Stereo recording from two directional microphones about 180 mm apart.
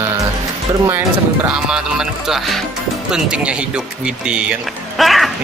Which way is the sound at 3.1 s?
5° right (ahead or behind).